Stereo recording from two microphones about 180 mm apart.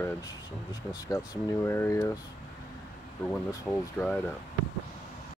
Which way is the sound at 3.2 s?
10° left (ahead or behind).